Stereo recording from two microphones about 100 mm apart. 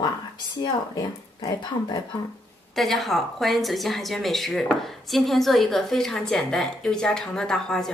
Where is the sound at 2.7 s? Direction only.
Centre (ahead or behind).